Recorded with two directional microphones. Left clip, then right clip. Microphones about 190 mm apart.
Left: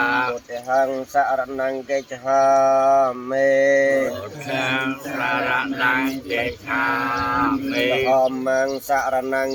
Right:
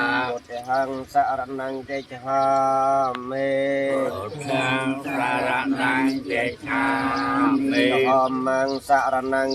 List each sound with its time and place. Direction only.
0.0 s speech: 30° left (ahead or behind)
4.4 s speech: 50° left (ahead or behind); by 8.2 s 30° left (ahead or behind)
8.2 s speech: 45° left (ahead or behind)